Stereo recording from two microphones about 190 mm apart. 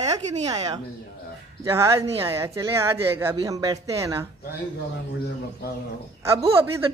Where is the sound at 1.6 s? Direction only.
15° right (ahead or behind).